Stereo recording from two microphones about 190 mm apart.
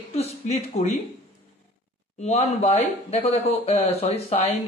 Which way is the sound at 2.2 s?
35° left (ahead or behind).